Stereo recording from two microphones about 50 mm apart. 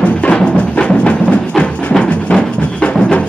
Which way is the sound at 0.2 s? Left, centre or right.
Left.